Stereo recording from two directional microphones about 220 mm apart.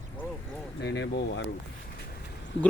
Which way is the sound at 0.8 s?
55° left (ahead or behind).